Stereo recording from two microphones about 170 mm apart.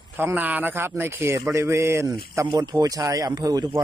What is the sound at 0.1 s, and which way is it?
A man's voice, 10° right (ahead or behind).